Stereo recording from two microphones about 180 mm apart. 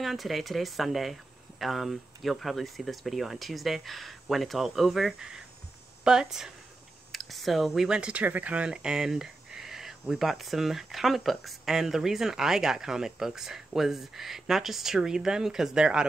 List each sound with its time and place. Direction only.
0.0 s speech: centre (ahead or behind)